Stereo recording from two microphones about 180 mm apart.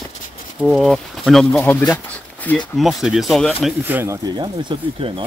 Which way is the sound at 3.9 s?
10° right (ahead or behind).